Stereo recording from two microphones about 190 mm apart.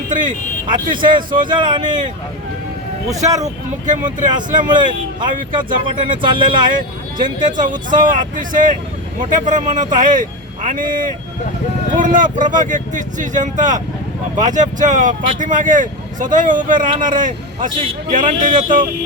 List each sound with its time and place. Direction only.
0.1 s speech: 45° right (ahead or behind)
1.0 s speech: 25° right (ahead or behind)
4.0 s speech: 25° right (ahead or behind)
6.7 s speech: 45° right (ahead or behind)